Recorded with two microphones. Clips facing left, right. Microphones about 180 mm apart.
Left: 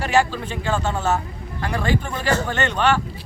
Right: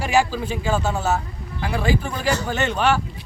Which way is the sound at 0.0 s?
10° right (ahead or behind).